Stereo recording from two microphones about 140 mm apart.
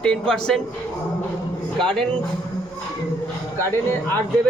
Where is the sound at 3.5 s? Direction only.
15° left (ahead or behind).